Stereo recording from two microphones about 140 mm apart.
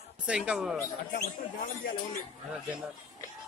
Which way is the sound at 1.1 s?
80° left.